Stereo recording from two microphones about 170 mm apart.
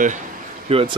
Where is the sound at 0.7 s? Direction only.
35° right (ahead or behind).